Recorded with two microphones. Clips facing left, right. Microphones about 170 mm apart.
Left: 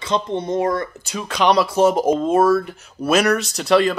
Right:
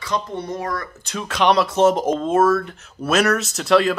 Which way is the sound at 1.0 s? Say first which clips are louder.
Right 2 dB; centre (ahead or behind).